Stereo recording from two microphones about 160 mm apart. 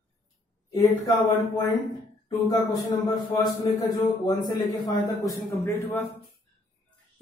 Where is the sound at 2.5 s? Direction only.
25° left (ahead or behind).